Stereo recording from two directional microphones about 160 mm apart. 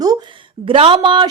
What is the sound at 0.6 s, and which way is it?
Speech, 35° right (ahead or behind).